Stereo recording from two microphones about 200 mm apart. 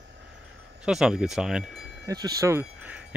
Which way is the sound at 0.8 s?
5° right (ahead or behind).